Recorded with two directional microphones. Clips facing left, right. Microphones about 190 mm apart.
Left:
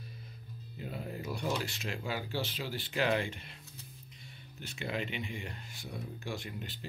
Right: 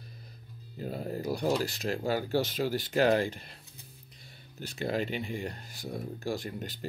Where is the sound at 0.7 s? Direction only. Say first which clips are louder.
Right 6 dB; 40° right (ahead or behind).